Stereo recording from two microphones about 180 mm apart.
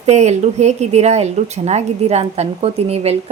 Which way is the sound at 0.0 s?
40° right (ahead or behind).